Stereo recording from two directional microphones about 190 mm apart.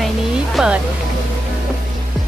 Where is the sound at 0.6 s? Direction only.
Centre (ahead or behind).